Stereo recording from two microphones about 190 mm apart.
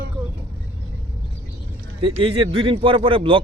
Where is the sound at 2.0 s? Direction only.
30° right (ahead or behind).